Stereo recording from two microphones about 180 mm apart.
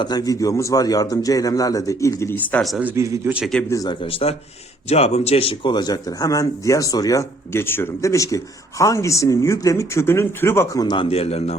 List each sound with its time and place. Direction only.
0.0 s a man's voice: 20° left (ahead or behind); by 2.9 s centre (ahead or behind)
2.9 s speech: 15° right (ahead or behind)
3.4 s a man's voice: 5° left (ahead or behind)
3.7 s a man's voice: 20° left (ahead or behind)
4.0 s a man's voice: 30° left (ahead or behind)